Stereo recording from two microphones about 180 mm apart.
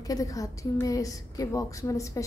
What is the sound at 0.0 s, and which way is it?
A woman's voice, 20° left (ahead or behind).